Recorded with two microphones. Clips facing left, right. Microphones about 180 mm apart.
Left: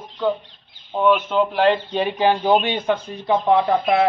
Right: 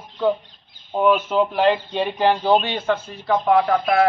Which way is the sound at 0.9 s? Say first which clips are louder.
Even; 5° right (ahead or behind).